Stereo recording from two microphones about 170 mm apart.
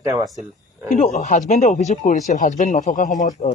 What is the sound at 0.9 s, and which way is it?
Speech, 45° left (ahead or behind).